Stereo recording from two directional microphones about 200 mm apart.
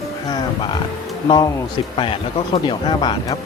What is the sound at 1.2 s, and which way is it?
Speech, 20° left (ahead or behind).